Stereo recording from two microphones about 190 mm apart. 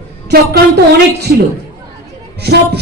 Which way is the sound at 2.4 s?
60° right (ahead or behind).